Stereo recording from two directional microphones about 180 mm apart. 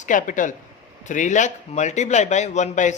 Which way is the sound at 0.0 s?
45° left (ahead or behind).